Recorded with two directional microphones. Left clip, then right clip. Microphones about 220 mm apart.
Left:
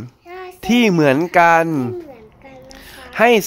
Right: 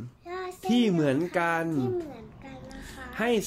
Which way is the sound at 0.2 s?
Centre (ahead or behind).